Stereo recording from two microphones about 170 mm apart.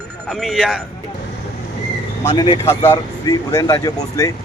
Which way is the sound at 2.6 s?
20° left (ahead or behind).